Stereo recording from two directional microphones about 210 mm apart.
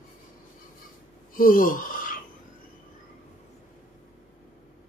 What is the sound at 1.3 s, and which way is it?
Gasp, 40° left (ahead or behind).